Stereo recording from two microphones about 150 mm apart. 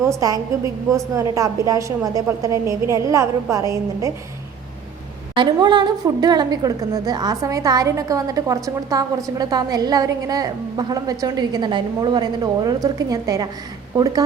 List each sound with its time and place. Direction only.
0.0 s a woman's voice: 20° right (ahead or behind)
5.3 s a woman's voice: 30° right (ahead or behind)